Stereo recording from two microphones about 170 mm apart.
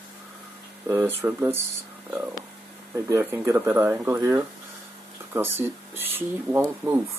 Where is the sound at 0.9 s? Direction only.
15° right (ahead or behind).